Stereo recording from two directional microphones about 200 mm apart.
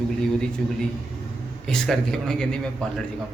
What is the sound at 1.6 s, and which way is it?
A man's voice, centre (ahead or behind).